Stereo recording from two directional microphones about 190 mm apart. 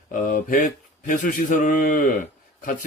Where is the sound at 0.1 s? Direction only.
45° left (ahead or behind).